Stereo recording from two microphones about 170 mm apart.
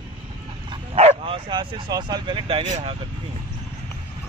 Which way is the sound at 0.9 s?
35° right (ahead or behind).